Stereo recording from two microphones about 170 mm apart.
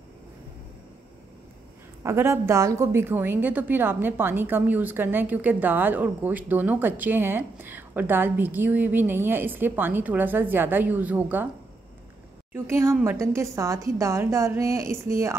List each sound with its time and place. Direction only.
2.0 s a woman's voice: 15° right (ahead or behind)
12.5 s a woman's voice: 15° right (ahead or behind)